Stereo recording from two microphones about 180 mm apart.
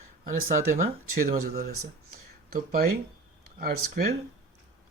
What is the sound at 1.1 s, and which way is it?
Speech, 55° right (ahead or behind).